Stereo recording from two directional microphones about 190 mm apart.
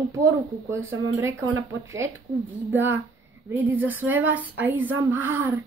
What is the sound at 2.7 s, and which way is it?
Speech, 10° right (ahead or behind).